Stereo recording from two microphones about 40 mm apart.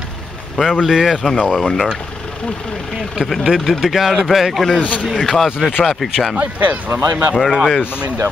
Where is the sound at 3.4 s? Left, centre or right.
Centre.